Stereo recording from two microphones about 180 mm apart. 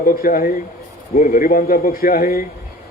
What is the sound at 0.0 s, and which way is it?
A man's voice, 55° left (ahead or behind).